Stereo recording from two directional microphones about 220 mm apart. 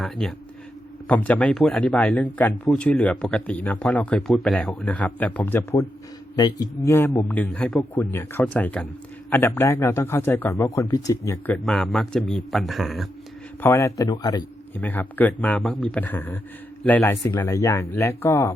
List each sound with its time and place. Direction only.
0.0 s speech: centre (ahead or behind)
13.6 s speech: 10° left (ahead or behind)
14.8 s speech: 10° left (ahead or behind)